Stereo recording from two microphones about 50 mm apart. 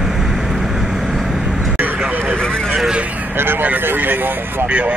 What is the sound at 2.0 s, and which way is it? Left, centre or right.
Vehicle, right.